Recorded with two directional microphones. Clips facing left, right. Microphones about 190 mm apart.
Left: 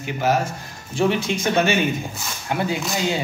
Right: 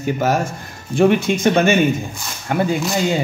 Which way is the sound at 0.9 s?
55° right (ahead or behind).